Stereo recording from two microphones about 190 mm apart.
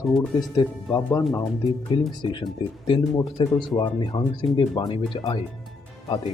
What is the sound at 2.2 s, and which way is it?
Speech, 25° left (ahead or behind).